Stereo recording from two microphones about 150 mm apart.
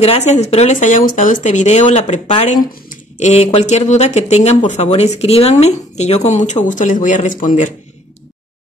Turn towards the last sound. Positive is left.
turn(degrees=60)  # may be behind; listen again after turning